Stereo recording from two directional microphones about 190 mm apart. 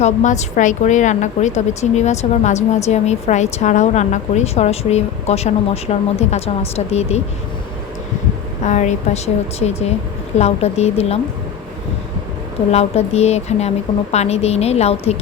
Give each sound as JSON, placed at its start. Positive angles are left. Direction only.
{"t": 0.0, "sound": "a woman's voice", "side_deg": 40}
{"t": 8.6, "sound": "a woman's voice", "side_deg": 40}
{"t": 12.7, "sound": "a woman's voice", "side_deg": 35}